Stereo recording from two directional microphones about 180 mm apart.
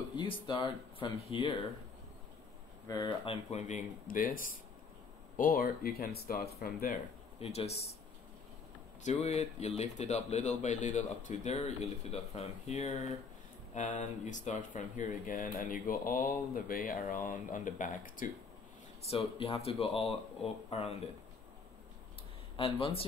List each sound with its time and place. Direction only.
0.1 s speech: 25° left (ahead or behind)
2.9 s a man's voice: 25° left (ahead or behind); by 7.0 s 55° left (ahead or behind)
7.3 s a man's voice: 35° left (ahead or behind)
9.0 s a man's voice: 40° left (ahead or behind)
19.0 s a man's voice: 35° left (ahead or behind)
22.6 s a man's voice: 30° left (ahead or behind)